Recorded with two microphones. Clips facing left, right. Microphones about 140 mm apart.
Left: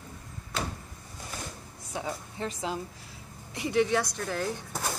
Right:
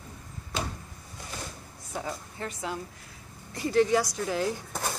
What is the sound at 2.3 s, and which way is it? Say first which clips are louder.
Speech: left 3 dB; 25° left (ahead or behind).